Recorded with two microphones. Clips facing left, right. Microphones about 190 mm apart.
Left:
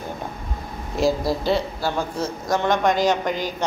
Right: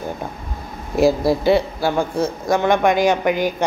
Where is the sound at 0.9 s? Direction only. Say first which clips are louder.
Right 5 dB; 60° right (ahead or behind).